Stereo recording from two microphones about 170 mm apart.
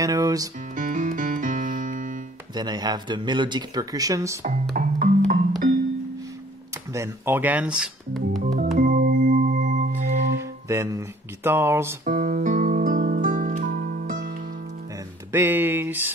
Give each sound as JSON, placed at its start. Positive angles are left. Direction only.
{"t": 0.0, "sound": "speech", "side_deg": -20}
{"t": 0.7, "sound": "music", "side_deg": -50}
{"t": 2.5, "sound": "speech", "side_deg": -25}
{"t": 4.7, "sound": "music", "side_deg": -55}
{"t": 6.9, "sound": "speech", "side_deg": -15}
{"t": 8.7, "sound": "music", "side_deg": -55}
{"t": 10.3, "sound": "music", "side_deg": -15}
{"t": 12.0, "sound": "music", "side_deg": -55}
{"t": 15.3, "sound": "speech", "side_deg": -10}